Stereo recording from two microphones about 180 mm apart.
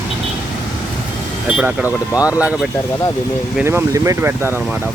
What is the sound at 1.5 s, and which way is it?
Speech, 10° right (ahead or behind).